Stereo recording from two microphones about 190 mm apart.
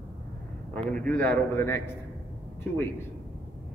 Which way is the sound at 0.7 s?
5° left (ahead or behind).